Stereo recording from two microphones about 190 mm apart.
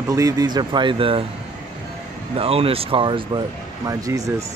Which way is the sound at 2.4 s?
30° right (ahead or behind).